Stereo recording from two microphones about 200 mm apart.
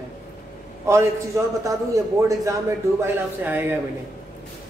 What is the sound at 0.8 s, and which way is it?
Speech, 15° right (ahead or behind).